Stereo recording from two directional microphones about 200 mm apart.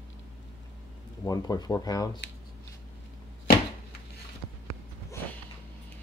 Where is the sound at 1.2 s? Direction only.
20° left (ahead or behind).